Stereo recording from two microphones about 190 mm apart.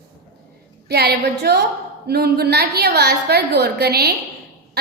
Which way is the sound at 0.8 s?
55° right (ahead or behind).